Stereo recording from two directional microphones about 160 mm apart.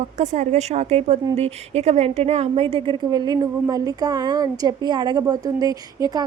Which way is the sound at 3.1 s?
25° right (ahead or behind).